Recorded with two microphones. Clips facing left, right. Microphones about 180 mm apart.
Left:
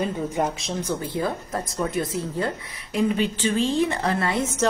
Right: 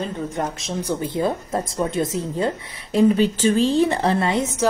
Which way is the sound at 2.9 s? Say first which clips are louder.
Right 6 dB; 40° right (ahead or behind).